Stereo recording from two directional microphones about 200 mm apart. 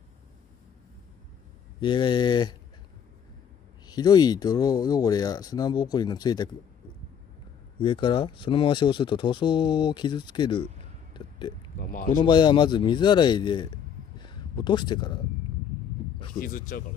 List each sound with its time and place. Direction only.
1.8 s speech: 25° left (ahead or behind)
3.8 s speech: 20° left (ahead or behind)
7.8 s speech: 25° left (ahead or behind)
11.1 s a sound: 25° left (ahead or behind)
11.8 s speech: 40° left (ahead or behind)
12.2 s a man's voice: 20° left (ahead or behind)
16.3 s speech: 45° left (ahead or behind)